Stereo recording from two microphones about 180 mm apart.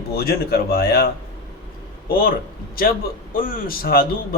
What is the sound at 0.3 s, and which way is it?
Speech, 60° left (ahead or behind).